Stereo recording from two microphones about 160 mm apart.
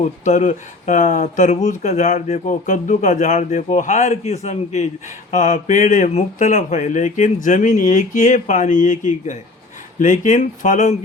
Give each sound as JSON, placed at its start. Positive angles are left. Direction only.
{"t": 0.0, "sound": "speech", "side_deg": 50}